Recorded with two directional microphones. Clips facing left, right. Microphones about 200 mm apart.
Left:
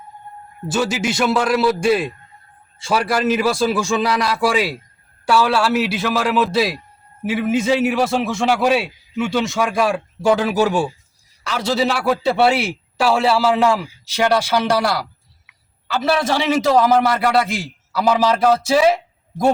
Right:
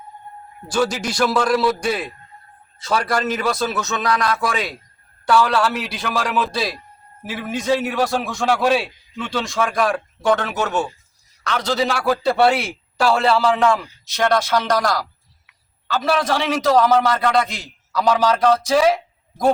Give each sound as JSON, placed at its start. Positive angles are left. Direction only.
{"t": 0.7, "sound": "a man's voice", "side_deg": 5}
{"t": 1.8, "sound": "a man's voice", "side_deg": 25}
{"t": 2.9, "sound": "a man's voice", "side_deg": 5}
{"t": 7.9, "sound": "a man's voice", "side_deg": 0}